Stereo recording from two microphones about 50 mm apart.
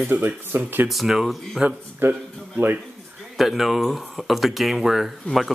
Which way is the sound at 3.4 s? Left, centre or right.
Centre.